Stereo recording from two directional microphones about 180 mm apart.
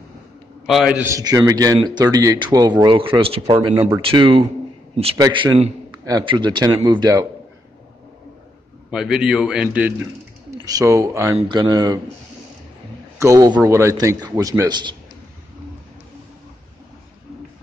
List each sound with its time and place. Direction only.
0.7 s a man's voice: 5° right (ahead or behind); by 7.2 s 20° right (ahead or behind)
8.9 s a man's voice: 5° right (ahead or behind); by 12.0 s 20° right (ahead or behind)
13.2 s a man's voice: 20° right (ahead or behind)